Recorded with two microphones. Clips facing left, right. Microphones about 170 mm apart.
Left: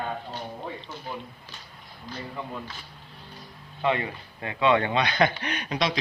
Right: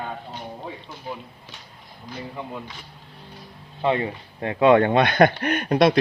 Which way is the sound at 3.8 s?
30° right (ahead or behind).